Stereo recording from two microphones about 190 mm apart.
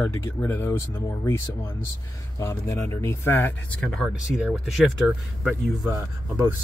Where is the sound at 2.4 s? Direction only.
15° left (ahead or behind).